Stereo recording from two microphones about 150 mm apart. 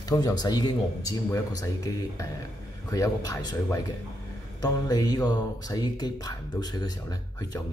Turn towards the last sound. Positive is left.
turn(degrees=25)  # may be behind; listen again after turning